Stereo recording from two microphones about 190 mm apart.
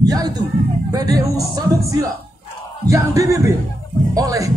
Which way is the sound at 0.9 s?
20° right (ahead or behind).